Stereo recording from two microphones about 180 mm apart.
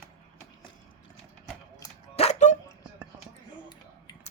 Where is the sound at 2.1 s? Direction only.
35° left (ahead or behind).